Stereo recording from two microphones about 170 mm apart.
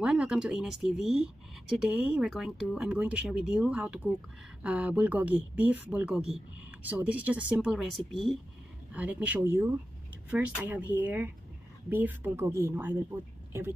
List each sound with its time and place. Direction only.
0.0 s speech: 5° right (ahead or behind)